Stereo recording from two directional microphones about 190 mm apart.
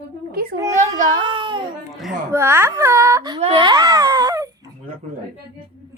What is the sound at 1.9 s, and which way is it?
Speech, centre (ahead or behind).